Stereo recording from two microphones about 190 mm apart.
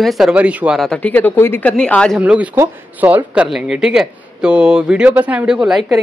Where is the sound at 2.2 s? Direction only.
5° right (ahead or behind).